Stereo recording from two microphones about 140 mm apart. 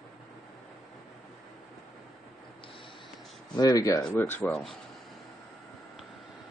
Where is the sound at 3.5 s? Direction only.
25° left (ahead or behind).